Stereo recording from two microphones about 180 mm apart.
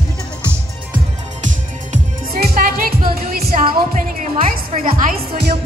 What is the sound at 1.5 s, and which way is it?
Music, 50° right (ahead or behind).